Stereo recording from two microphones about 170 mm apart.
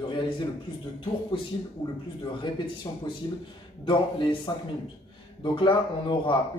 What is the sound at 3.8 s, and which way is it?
Speech, 30° left (ahead or behind).